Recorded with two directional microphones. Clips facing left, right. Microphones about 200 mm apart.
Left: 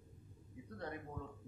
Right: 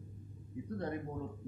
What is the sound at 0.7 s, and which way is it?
Speech, 35° right (ahead or behind).